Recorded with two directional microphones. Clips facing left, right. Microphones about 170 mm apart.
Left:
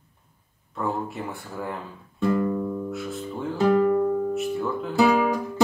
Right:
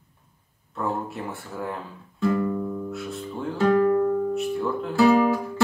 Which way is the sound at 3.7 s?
10° left (ahead or behind).